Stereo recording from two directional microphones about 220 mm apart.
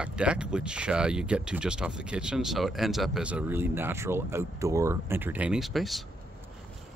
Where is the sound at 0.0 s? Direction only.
5° right (ahead or behind).